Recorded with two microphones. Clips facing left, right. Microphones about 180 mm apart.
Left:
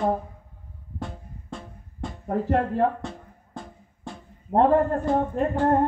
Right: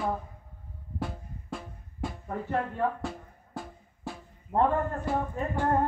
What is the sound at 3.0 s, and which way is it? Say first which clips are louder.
Music: even; 5° right (ahead or behind).